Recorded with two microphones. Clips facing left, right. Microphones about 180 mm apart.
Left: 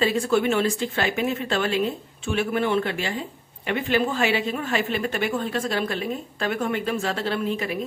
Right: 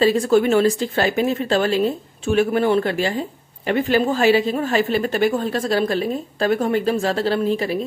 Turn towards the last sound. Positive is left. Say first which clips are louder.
# right 6 dB
turn(degrees=-35)  # may be behind; listen again after turning